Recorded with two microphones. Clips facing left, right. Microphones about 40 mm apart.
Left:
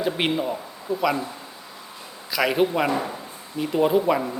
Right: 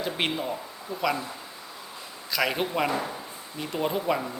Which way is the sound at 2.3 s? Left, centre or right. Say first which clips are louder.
Left 5 dB; centre.